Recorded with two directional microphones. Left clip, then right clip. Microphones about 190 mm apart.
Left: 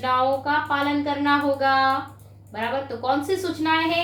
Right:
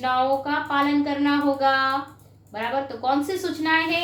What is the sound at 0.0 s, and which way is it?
A woman's voice, 30° right (ahead or behind).